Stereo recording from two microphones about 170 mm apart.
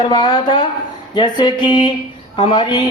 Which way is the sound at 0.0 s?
25° left (ahead or behind).